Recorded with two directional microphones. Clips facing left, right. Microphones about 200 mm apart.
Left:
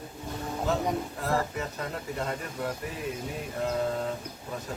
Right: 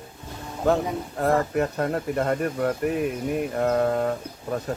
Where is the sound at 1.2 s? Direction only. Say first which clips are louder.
Right 12 dB; 60° right (ahead or behind).